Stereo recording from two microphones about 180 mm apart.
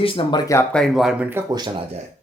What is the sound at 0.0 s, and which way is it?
Speech, 30° left (ahead or behind).